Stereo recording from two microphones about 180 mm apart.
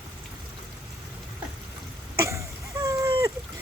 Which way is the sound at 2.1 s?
15° right (ahead or behind).